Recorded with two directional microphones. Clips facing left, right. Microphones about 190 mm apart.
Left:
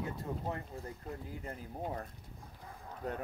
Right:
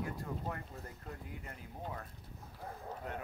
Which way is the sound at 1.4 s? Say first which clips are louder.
Left 6 dB; 35° left (ahead or behind).